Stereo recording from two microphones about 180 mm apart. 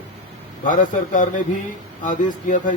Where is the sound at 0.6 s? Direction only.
45° left (ahead or behind).